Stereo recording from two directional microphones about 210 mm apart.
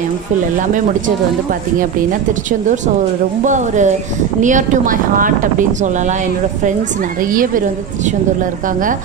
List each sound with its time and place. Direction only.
3.4 s a woman's voice: 35° right (ahead or behind)
7.2 s a woman's voice: 40° right (ahead or behind)